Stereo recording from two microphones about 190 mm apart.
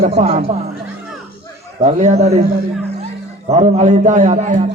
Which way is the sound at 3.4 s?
35° right (ahead or behind).